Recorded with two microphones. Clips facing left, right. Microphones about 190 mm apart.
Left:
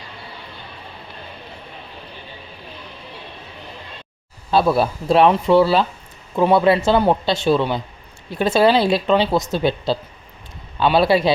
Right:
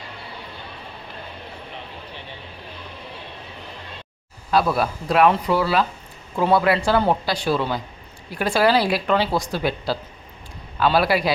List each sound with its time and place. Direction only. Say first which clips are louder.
4.5 s speech: left 3 dB; 30° left (ahead or behind)